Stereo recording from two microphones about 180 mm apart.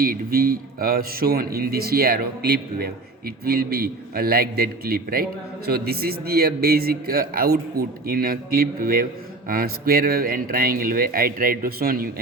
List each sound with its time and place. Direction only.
0.0 s a man's voice: 55° right (ahead or behind)